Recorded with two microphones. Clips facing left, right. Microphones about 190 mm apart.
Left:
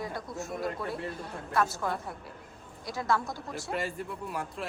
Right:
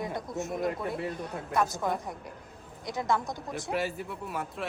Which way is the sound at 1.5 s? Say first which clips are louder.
Right 1 dB; 15° right (ahead or behind).